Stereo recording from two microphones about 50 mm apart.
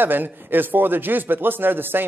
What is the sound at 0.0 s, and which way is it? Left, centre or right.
Speech, right.